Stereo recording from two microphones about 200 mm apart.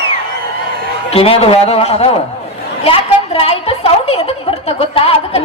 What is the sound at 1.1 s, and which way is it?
A man's voice, 30° left (ahead or behind).